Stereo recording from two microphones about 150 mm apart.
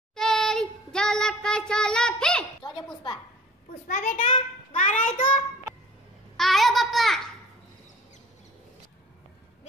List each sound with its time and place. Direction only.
0.1 s child singing: 5° left (ahead or behind)
3.8 s a child's voice: 65° left (ahead or behind)
6.3 s a sound: centre (ahead or behind)